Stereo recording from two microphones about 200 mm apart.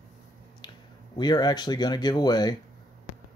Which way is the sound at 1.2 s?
20° left (ahead or behind).